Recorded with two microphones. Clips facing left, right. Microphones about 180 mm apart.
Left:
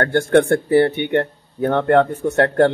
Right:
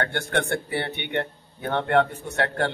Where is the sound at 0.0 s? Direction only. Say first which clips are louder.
Left 11 dB; 45° left (ahead or behind).